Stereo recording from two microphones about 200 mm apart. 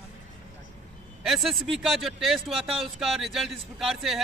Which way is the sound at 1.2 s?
Centre (ahead or behind).